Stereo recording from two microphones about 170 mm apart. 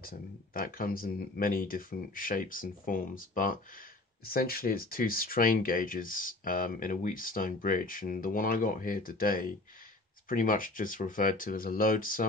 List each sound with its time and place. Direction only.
0.0 s speech: 55° left (ahead or behind)